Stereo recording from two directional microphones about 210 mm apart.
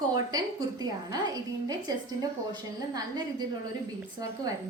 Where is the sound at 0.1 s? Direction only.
20° right (ahead or behind).